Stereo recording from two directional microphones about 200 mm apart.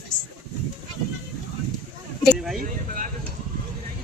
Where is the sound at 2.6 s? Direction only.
40° right (ahead or behind).